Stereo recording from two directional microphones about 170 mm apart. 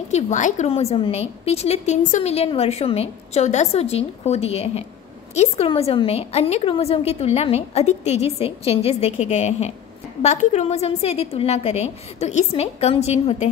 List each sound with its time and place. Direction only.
0.1 s a woman's voice: 45° left (ahead or behind)
5.7 s a woman's voice: 30° left (ahead or behind)